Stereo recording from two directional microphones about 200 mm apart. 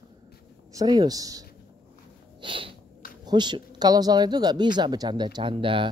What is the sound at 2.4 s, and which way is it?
A woman's voice, 25° right (ahead or behind).